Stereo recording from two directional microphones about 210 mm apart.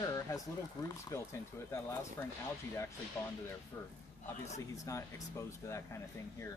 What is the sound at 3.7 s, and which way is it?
Speech, 15° left (ahead or behind).